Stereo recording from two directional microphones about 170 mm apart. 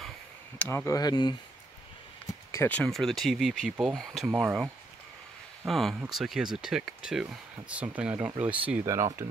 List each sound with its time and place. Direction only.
0.6 s speech: 15° left (ahead or behind)
2.5 s speech: 10° left (ahead or behind)
4.3 s speech: 15° right (ahead or behind)
5.7 s speech: centre (ahead or behind); by 9.2 s 15° right (ahead or behind)